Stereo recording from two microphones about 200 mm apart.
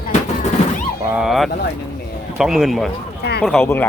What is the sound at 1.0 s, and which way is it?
Speech, 5° right (ahead or behind).